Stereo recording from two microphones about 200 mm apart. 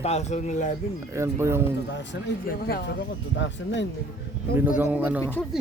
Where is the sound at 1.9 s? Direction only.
65° left (ahead or behind).